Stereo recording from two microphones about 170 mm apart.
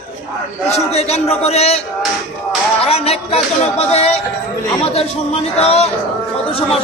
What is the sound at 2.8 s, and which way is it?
Speech, 35° left (ahead or behind).